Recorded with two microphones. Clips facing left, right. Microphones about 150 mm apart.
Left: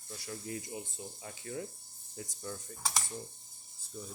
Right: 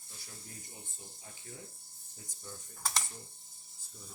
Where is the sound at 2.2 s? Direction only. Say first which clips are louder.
Left 9 dB; 90° left.